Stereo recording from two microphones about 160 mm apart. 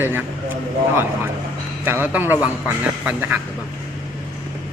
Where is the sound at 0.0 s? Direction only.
15° right (ahead or behind).